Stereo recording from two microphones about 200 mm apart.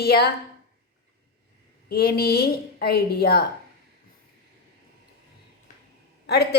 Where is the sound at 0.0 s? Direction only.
50° left (ahead or behind).